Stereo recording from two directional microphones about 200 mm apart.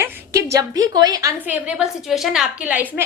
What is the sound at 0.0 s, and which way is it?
A woman's voice, 10° right (ahead or behind).